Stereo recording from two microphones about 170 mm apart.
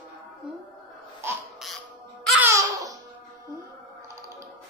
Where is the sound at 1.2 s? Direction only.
15° right (ahead or behind).